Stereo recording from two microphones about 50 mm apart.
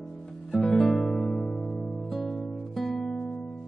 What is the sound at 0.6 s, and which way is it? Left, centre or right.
Music, centre.